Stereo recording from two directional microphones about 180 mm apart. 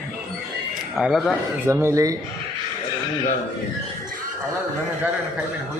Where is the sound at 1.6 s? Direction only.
15° right (ahead or behind).